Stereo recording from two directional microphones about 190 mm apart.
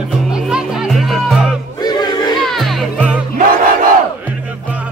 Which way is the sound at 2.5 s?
Centre (ahead or behind).